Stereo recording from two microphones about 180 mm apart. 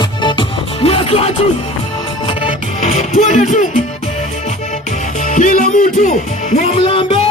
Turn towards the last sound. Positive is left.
turn(degrees=30)  # may be behind; listen again after turning